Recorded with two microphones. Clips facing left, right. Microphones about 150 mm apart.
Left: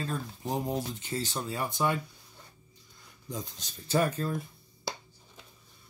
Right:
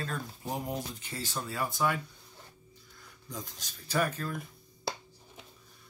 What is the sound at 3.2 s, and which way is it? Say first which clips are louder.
Speech: left 4 dB; 25° left (ahead or behind).